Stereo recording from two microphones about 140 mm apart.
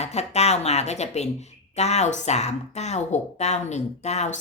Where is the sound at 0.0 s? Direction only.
50° left (ahead or behind).